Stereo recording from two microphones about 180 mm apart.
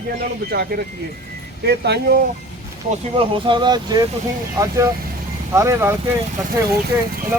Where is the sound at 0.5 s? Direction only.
60° right (ahead or behind).